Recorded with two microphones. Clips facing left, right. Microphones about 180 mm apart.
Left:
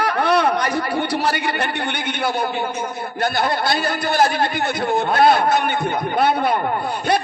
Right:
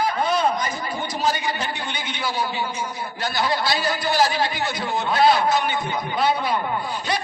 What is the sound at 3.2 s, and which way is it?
A man's voice, 55° left (ahead or behind).